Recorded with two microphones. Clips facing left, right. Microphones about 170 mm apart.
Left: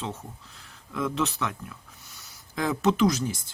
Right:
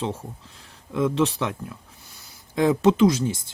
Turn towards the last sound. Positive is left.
turn(degrees=-25)  # may be behind; listen again after turning